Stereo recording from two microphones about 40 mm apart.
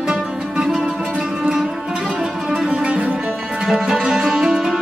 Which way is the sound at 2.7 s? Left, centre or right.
Right.